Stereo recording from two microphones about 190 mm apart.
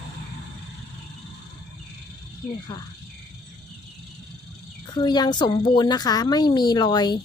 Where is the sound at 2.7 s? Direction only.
20° left (ahead or behind).